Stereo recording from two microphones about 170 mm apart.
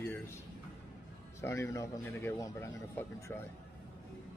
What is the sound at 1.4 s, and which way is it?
A man's voice, 15° left (ahead or behind).